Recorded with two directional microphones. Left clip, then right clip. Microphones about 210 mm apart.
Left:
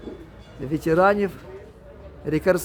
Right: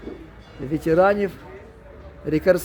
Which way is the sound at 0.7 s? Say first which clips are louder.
Right 1 dB; 5° right (ahead or behind).